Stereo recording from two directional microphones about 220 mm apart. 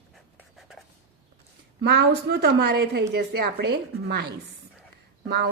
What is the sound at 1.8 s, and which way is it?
A woman's voice, 50° right (ahead or behind).